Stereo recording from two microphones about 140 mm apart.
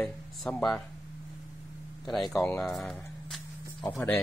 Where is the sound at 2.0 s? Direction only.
Centre (ahead or behind).